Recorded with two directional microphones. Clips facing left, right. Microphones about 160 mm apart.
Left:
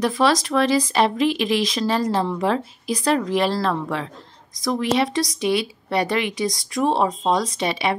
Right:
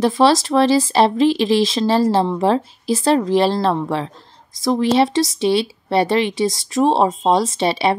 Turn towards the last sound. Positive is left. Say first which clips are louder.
# right 5 dB
turn(degrees=-30)  # may be behind; listen again after turning